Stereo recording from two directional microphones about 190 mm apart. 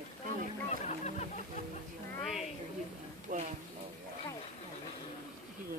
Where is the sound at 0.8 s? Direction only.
35° left (ahead or behind).